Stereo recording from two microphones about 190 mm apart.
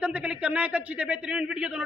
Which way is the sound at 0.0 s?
5° right (ahead or behind).